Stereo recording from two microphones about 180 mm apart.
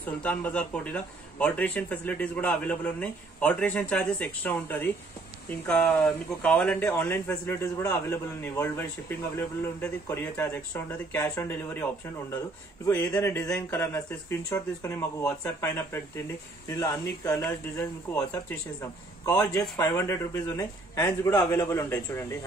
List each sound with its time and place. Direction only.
0.0 s speech: 5° left (ahead or behind)
19.2 s speech: 15° left (ahead or behind)